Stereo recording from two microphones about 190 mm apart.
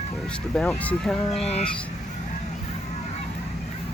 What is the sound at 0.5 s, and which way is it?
Speech, 5° left (ahead or behind).